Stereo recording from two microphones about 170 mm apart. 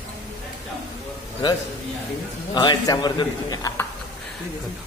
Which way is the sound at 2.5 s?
25° left (ahead or behind).